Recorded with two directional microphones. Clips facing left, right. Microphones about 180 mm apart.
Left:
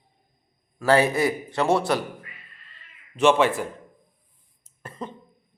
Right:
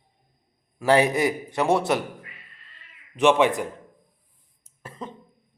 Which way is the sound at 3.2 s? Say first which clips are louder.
Even; 15° right (ahead or behind).